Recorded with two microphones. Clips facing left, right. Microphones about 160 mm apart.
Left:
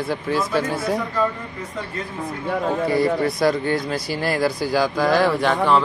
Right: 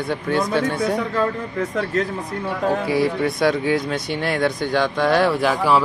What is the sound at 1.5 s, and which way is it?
Speech, 75° right (ahead or behind).